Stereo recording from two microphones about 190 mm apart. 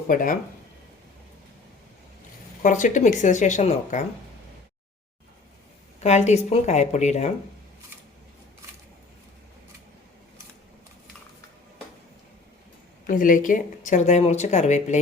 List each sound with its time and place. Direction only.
0.1 s speech: 45° left (ahead or behind)
2.6 s speech: 40° left (ahead or behind)
6.0 s speech: 35° left (ahead or behind)
13.1 s speech: 45° left (ahead or behind)